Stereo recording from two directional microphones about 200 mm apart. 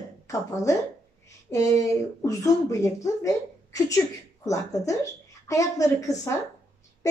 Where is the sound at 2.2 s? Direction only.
15° left (ahead or behind).